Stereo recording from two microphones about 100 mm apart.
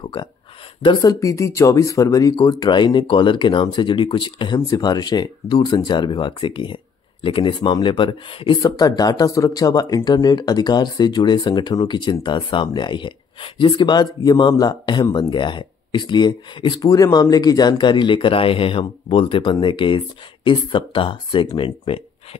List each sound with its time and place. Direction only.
0.0 s speech: 55° left (ahead or behind)
1.0 s speech: 30° left (ahead or behind); by 4.6 s 55° left (ahead or behind)
4.6 s speech: 35° left (ahead or behind); by 8.5 s 60° left (ahead or behind)
8.6 s speech: 40° left (ahead or behind); by 22.0 s 60° left (ahead or behind)